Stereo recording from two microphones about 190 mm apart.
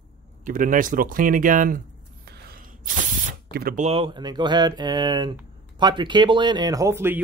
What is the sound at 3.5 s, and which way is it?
Speech, 55° right (ahead or behind).